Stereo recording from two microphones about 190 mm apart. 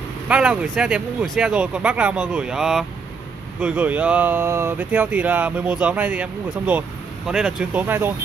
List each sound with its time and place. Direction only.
0.3 s speech: 5° right (ahead or behind)